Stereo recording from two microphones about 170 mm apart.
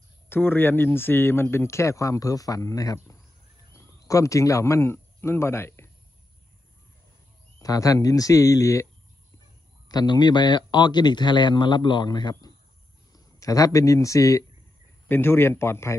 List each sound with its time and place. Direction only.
0.3 s speech: 10° left (ahead or behind)
7.5 s speech: 20° left (ahead or behind)
9.8 s speech: 25° left (ahead or behind)